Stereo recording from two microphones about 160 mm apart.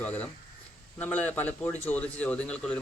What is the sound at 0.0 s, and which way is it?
A man's voice, 10° left (ahead or behind).